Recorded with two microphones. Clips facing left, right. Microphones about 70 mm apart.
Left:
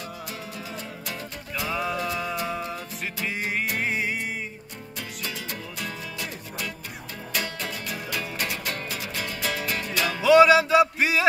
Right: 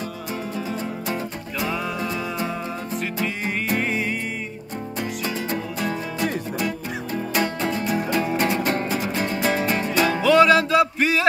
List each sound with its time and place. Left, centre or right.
1.7 s music: centre
3.8 s music: centre
5.2 s music: right
7.3 s music: right
10.2 s a sound: centre